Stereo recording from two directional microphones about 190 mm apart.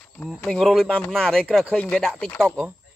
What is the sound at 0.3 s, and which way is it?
Speech, centre (ahead or behind).